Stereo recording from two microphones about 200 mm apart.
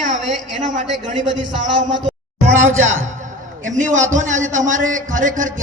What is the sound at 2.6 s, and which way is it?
Speech, 80° right.